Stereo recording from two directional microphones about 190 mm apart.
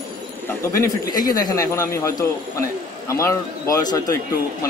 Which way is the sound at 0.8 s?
20° left (ahead or behind).